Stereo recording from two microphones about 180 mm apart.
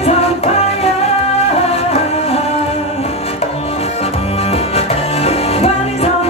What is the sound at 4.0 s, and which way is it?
Music, 35° left (ahead or behind).